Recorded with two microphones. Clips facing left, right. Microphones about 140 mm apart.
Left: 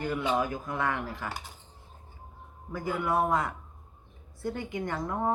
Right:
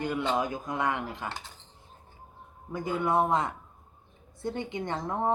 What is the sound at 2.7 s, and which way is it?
A woman's voice, 20° right (ahead or behind).